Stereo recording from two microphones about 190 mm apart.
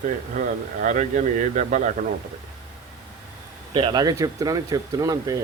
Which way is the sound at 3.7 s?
25° right (ahead or behind).